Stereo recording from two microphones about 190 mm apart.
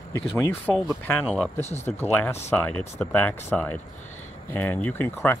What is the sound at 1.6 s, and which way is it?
Speech, 35° left (ahead or behind).